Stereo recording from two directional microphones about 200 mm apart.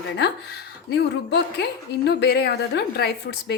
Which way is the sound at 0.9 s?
55° left (ahead or behind).